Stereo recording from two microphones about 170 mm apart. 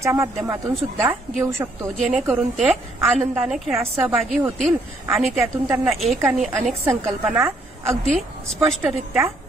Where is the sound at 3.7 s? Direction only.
15° right (ahead or behind).